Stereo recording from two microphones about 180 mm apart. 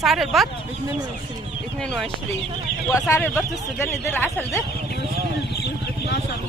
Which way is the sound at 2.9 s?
15° left (ahead or behind).